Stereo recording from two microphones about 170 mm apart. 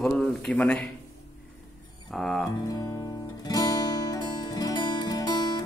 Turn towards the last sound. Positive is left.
turn(degrees=25)  # may be behind; listen again after turning